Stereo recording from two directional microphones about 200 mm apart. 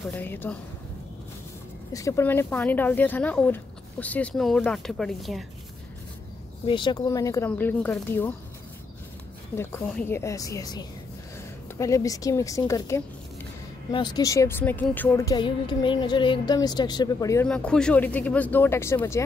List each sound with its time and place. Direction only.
0.1 s speech: 10° left (ahead or behind)
1.9 s speech: 15° left (ahead or behind); by 5.4 s centre (ahead or behind)
6.6 s speech: 25° left (ahead or behind)
9.6 s a woman's voice: 10° left (ahead or behind)
17.5 s speech: 5° left (ahead or behind)